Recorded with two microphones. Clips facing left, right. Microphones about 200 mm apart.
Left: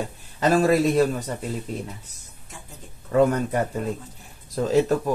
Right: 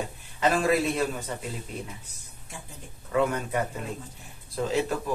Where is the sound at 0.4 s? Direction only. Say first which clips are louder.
Left 5 dB; 40° left (ahead or behind).